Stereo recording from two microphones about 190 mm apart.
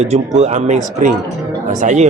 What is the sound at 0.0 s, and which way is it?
Speech, 35° right (ahead or behind).